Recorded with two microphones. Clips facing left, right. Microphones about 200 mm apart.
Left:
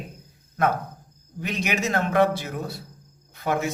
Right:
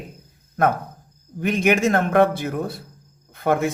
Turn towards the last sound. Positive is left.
turn(degrees=-55)  # may be behind; listen again after turning